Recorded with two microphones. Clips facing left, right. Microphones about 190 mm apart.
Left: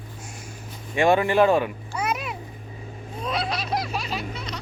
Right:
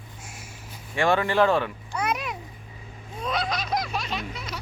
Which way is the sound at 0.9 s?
20° left (ahead or behind).